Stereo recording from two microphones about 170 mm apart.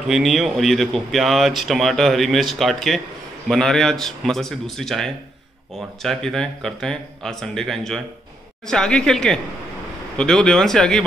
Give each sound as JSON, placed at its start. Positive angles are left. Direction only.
{"t": 0.1, "sound": "speech", "side_deg": 0}